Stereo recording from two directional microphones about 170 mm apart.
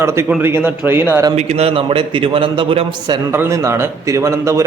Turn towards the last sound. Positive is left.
turn(degrees=-15)  # may be behind; listen again after turning